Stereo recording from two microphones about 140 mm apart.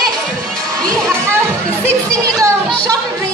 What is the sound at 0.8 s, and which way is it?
Speech, 5° left (ahead or behind).